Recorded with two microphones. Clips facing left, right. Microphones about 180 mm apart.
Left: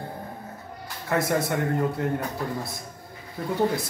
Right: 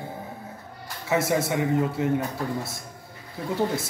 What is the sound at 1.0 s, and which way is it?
A man's voice, 5° right (ahead or behind).